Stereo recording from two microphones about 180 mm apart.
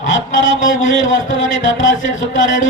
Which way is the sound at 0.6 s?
90° left.